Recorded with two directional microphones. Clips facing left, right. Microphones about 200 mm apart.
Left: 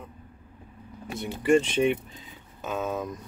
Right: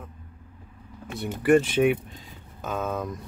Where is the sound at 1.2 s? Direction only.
5° right (ahead or behind).